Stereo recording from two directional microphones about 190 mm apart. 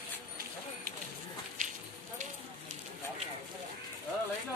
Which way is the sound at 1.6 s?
45° right (ahead or behind).